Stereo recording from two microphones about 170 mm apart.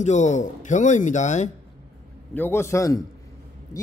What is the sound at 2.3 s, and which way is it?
Speech, 15° left (ahead or behind).